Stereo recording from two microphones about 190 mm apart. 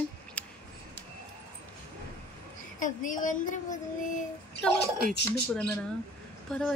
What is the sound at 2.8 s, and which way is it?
A woman's voice, 45° left (ahead or behind).